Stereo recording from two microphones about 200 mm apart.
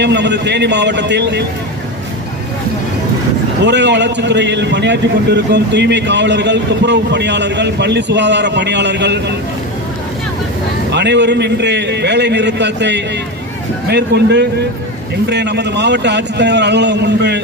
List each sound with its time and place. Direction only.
0.0 s a man's voice: 60° right (ahead or behind)
3.6 s a man's voice: 60° right (ahead or behind)
10.9 s a man's voice: 60° right (ahead or behind)